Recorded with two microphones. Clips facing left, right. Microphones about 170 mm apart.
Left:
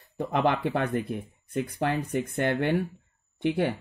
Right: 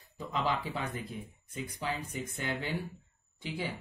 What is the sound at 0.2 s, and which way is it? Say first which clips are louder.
Speech: left 8 dB; 60° left (ahead or behind).